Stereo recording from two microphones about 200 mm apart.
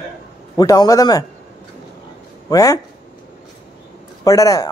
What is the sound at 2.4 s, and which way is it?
Speech, 15° left (ahead or behind).